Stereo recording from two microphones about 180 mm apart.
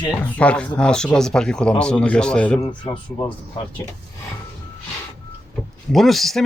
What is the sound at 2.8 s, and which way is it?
Speech, 25° left (ahead or behind).